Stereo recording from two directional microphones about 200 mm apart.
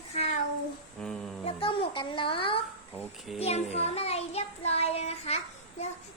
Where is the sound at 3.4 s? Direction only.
30° left (ahead or behind).